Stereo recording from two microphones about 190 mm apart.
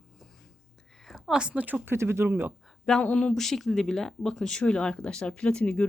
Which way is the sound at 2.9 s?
5° left (ahead or behind).